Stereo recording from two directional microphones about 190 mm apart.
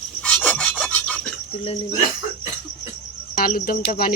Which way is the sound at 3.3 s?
50° left (ahead or behind).